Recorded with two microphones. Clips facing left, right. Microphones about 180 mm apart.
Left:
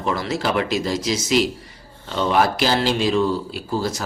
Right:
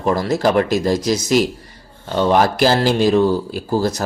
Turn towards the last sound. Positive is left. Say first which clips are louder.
# right 5 dB
turn(degrees=-40)  # may be behind; listen again after turning